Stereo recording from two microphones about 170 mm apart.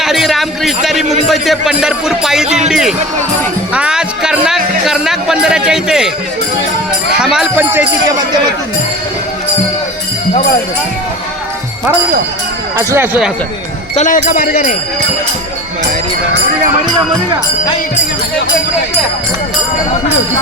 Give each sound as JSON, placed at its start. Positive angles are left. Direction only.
{"t": 0.0, "sound": "a sound", "side_deg": 0}
{"t": 1.3, "sound": "speech", "side_deg": 0}
{"t": 3.7, "sound": "music", "side_deg": -5}
{"t": 7.1, "sound": "speech", "side_deg": -5}
{"t": 12.7, "sound": "speech", "side_deg": -15}
{"t": 13.9, "sound": "speech", "side_deg": 50}